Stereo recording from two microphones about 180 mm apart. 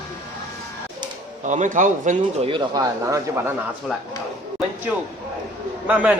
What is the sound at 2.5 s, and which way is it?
Speech, 20° right (ahead or behind).